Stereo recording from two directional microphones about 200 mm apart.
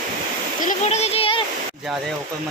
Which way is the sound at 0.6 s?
30° left (ahead or behind).